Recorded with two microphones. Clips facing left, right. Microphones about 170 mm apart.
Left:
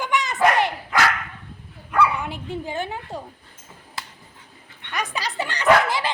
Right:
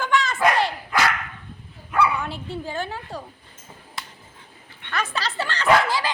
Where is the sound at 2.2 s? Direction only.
15° left (ahead or behind).